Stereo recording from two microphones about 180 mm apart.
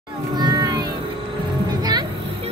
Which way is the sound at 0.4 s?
20° right (ahead or behind).